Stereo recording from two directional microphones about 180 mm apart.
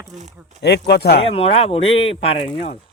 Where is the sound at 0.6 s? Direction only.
65° left (ahead or behind).